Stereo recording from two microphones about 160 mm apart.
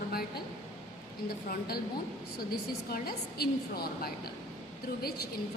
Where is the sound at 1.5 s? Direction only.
75° left (ahead or behind).